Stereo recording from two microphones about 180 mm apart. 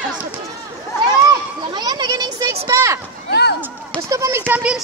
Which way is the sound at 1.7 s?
20° right (ahead or behind).